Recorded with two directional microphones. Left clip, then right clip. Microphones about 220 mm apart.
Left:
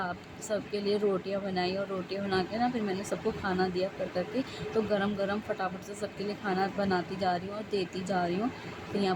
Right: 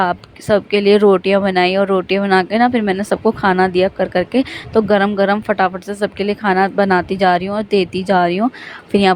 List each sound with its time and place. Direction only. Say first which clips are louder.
0.0 s speech: right 19 dB; 45° right (ahead or behind)